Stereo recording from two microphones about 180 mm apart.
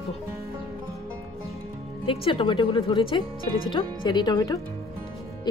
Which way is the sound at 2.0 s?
30° left (ahead or behind).